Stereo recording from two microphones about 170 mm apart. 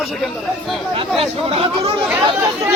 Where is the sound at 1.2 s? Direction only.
35° right (ahead or behind).